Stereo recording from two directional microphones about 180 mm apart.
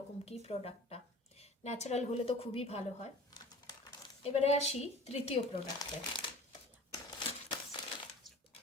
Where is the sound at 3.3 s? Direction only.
25° left (ahead or behind).